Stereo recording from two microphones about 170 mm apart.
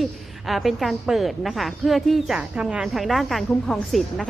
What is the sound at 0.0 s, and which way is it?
A woman's voice, centre (ahead or behind).